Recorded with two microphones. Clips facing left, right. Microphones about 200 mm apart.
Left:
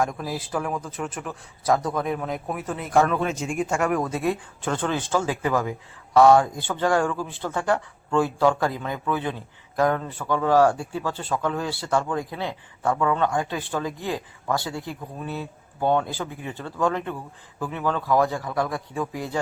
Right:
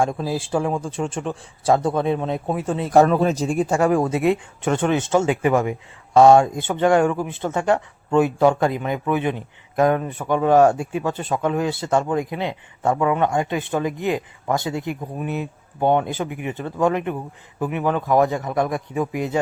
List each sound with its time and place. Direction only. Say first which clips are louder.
0.0 s speech: right 4 dB; 30° right (ahead or behind)